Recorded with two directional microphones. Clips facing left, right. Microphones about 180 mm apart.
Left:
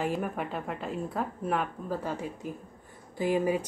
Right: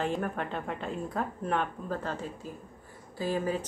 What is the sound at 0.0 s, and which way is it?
Speech, 10° left (ahead or behind).